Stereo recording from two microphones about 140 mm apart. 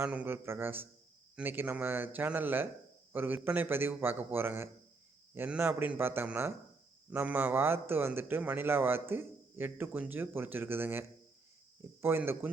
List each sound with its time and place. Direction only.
0.0 s a man's voice: 10° right (ahead or behind)
12.0 s a man's voice: 15° right (ahead or behind)